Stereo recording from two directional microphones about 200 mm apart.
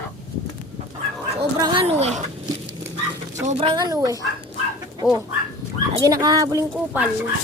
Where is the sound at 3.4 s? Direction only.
30° right (ahead or behind).